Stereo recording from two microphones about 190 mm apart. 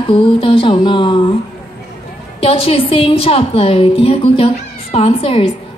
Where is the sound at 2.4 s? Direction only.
30° left (ahead or behind).